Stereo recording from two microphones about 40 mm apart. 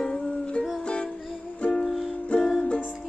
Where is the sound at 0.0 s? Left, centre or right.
Left.